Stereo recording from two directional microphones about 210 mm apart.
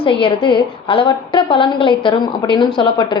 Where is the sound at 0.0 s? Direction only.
25° left (ahead or behind).